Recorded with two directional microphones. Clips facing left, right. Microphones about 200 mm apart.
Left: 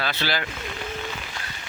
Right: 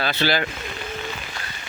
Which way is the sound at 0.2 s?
60° right (ahead or behind).